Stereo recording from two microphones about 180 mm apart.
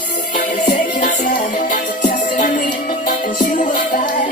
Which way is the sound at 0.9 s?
45° left (ahead or behind).